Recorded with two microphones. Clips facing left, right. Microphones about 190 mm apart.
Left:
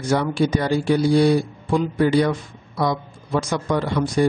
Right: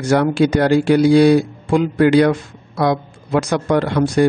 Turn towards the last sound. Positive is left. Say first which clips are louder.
# right 5 dB
turn(degrees=-75)  # may be behind; listen again after turning